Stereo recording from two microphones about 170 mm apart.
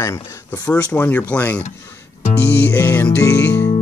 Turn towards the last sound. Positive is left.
turn(degrees=15)  # may be behind; listen again after turning